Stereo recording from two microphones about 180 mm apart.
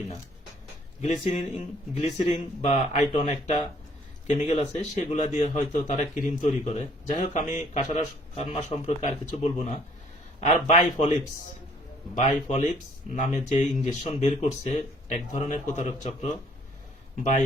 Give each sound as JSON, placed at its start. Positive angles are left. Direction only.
{"t": 1.0, "sound": "speech", "side_deg": 40}
{"t": 12.1, "sound": "speech", "side_deg": 40}